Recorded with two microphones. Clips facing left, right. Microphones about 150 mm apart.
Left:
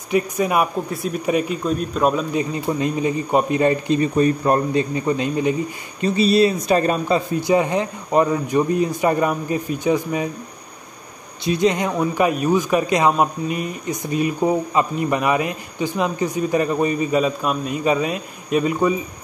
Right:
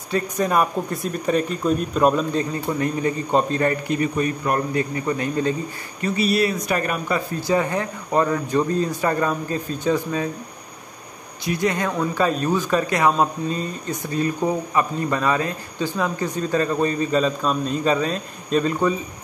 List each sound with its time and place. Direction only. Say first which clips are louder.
0.1 s a man's voice: left 2 dB; 10° left (ahead or behind)
2.3 s a man's voice: left 2 dB; 15° left (ahead or behind)
11.4 s a man's voice: left 4 dB; 20° left (ahead or behind)